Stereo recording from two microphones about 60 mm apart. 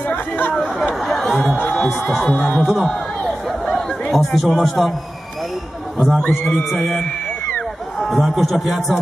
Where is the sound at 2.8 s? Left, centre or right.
Centre.